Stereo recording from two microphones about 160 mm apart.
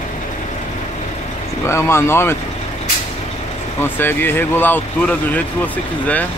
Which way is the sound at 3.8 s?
15° left (ahead or behind).